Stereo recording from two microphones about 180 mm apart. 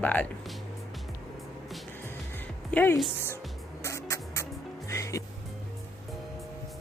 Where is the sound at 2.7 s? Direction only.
5° left (ahead or behind).